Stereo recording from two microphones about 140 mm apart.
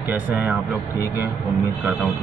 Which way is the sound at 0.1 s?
15° right (ahead or behind).